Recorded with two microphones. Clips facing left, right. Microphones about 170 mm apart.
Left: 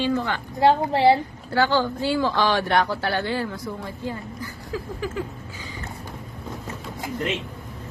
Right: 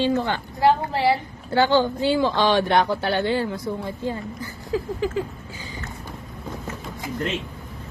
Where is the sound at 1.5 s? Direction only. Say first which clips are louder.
Right 3 dB; 20° right (ahead or behind).